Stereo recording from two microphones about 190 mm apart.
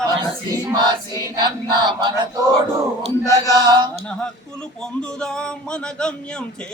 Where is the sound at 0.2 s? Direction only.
20° right (ahead or behind).